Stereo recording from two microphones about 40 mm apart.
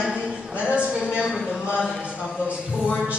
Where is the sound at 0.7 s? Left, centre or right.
Right.